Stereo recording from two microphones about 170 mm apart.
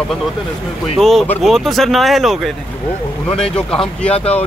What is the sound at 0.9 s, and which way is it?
Speech, centre (ahead or behind).